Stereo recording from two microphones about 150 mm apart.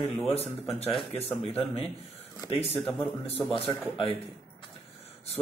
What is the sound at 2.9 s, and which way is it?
Speech, 15° left (ahead or behind).